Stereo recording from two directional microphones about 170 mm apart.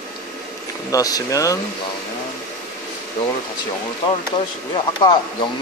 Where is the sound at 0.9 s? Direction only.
20° left (ahead or behind).